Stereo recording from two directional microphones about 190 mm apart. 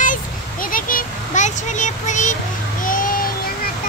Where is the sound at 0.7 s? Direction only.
45° left (ahead or behind).